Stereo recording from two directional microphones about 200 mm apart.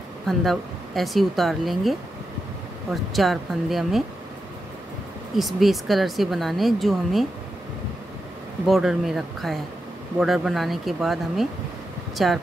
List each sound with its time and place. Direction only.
0.3 s speech: centre (ahead or behind)
5.3 s speech: centre (ahead or behind)
8.6 s speech: centre (ahead or behind)